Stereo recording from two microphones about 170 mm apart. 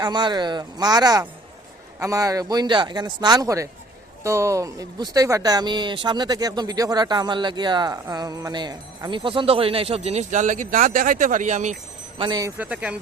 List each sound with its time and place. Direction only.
0.0 s speech: 25° right (ahead or behind); by 11.8 s 45° right (ahead or behind)
12.1 s speech: 30° right (ahead or behind)
12.4 s speech: 15° right (ahead or behind)